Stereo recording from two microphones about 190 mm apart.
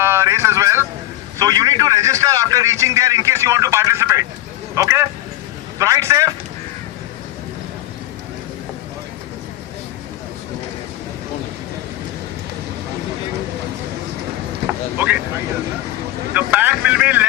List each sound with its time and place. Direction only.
0.0 s vehicle: 15° right (ahead or behind)
1.4 s a man's voice: 20° right (ahead or behind)
14.9 s a man's voice: 10° right (ahead or behind)
16.3 s speech: 10° right (ahead or behind)